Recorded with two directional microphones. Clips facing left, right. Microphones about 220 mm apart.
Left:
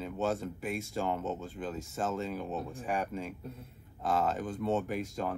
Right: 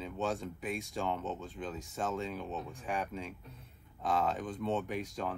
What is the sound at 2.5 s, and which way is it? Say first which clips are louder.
Speech: left 4 dB; 45° left (ahead or behind).